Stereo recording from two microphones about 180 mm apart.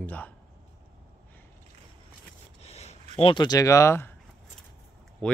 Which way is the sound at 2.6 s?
35° left (ahead or behind).